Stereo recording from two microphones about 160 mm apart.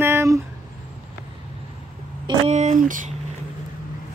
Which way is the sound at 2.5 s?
45° right (ahead or behind).